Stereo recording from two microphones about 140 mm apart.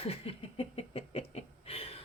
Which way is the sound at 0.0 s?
45° left (ahead or behind).